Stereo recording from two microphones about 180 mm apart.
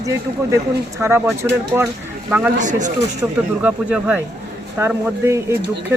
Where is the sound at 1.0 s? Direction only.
15° right (ahead or behind).